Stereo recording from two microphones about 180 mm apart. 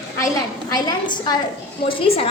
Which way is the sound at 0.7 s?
25° left (ahead or behind).